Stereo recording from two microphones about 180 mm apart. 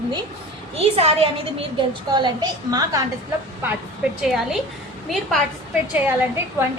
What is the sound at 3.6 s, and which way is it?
A woman's voice, 10° right (ahead or behind).